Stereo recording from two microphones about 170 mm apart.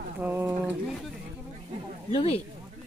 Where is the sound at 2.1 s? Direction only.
35° left (ahead or behind).